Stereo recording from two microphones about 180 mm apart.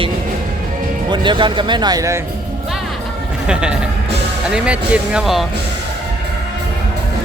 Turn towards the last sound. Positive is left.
turn(degrees=0)  # may be behind; listen again after turning